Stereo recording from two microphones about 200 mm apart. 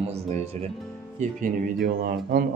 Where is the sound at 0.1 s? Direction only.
30° right (ahead or behind).